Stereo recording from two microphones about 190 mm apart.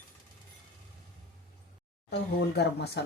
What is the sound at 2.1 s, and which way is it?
Speech, 60° left (ahead or behind).